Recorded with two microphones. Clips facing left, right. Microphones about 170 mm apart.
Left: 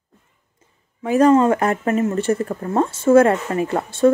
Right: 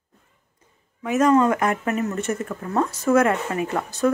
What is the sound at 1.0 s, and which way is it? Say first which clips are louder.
Speech: left 4 dB; 30° left (ahead or behind).